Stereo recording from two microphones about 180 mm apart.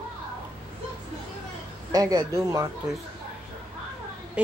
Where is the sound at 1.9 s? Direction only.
20° right (ahead or behind).